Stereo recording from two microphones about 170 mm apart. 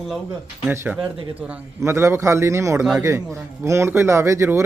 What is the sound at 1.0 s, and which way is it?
Speech, 30° right (ahead or behind).